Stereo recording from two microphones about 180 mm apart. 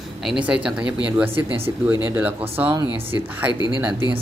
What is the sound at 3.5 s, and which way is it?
Speech, 25° left (ahead or behind).